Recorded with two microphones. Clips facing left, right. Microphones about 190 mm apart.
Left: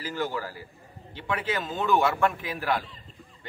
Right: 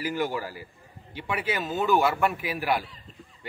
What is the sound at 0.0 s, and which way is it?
A man's voice, 15° right (ahead or behind).